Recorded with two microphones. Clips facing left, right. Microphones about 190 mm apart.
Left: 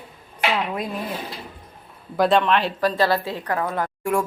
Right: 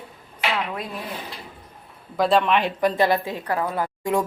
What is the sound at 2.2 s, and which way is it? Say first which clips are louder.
A woman's voice: left 1 dB; centre (ahead or behind).